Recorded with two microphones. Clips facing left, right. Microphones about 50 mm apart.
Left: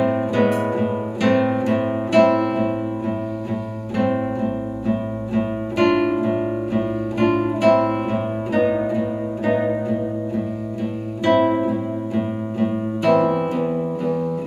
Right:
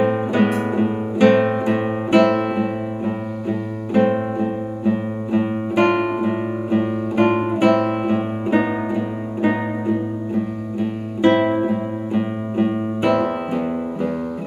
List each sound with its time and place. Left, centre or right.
0.0 s music: right
0.7 s guitar: right
3.9 s guitar: right
9.4 s music: right
11.2 s music: right
13.3 s music: centre